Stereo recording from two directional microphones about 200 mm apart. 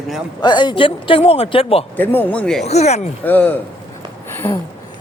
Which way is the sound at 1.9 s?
10° left (ahead or behind).